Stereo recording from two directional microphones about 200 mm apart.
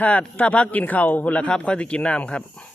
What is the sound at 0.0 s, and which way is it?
Speech, 5° left (ahead or behind).